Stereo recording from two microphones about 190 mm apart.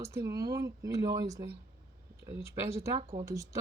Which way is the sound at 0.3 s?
15° right (ahead or behind).